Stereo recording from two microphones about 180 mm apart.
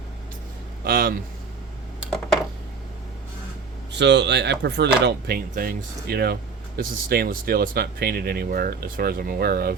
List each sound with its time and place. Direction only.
0.9 s speech: 55° right (ahead or behind)
2.0 s a sound: centre (ahead or behind)
3.9 s speech: 75° right (ahead or behind); by 9.7 s 55° right (ahead or behind)